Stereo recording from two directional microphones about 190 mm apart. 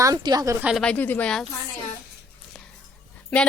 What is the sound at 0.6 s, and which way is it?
Speech, centre (ahead or behind).